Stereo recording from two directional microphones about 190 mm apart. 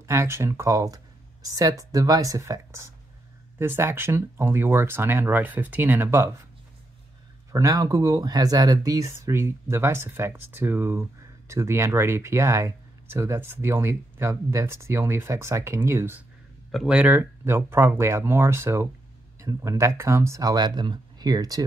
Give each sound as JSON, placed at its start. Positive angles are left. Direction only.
{"t": 0.0, "sound": "speech", "side_deg": -15}
{"t": 7.5, "sound": "speech", "side_deg": -15}